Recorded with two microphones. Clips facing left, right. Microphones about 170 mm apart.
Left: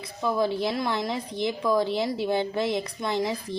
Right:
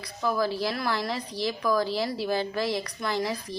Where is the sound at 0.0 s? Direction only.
25° left (ahead or behind).